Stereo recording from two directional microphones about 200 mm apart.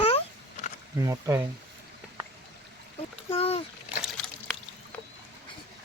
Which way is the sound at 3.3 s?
30° left (ahead or behind).